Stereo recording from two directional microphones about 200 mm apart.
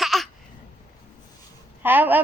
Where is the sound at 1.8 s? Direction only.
10° right (ahead or behind).